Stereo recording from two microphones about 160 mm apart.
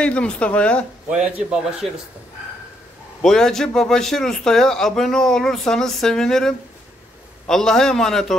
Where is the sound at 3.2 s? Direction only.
5° left (ahead or behind).